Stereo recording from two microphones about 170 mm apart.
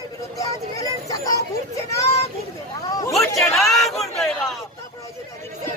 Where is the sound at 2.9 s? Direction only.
20° left (ahead or behind).